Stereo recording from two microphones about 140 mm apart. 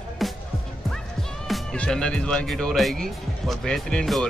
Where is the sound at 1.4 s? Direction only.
5° left (ahead or behind).